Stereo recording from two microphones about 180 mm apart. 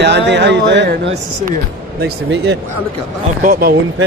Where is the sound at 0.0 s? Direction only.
75° right (ahead or behind).